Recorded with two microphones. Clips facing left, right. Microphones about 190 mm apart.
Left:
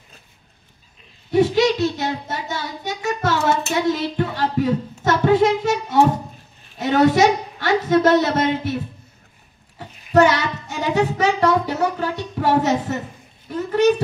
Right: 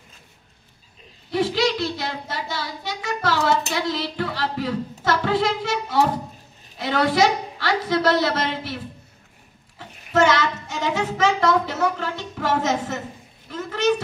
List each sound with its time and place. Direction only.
1.4 s child singing: 45° left (ahead or behind)
4.4 s a woman's voice: 45° left (ahead or behind)
6.8 s child singing: 45° left (ahead or behind)
9.8 s a child's voice: 40° left (ahead or behind)